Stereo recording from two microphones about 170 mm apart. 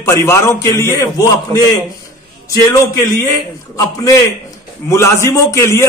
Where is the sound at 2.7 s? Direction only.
20° left (ahead or behind).